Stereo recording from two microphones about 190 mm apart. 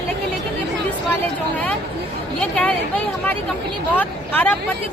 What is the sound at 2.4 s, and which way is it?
Speech, 5° left (ahead or behind).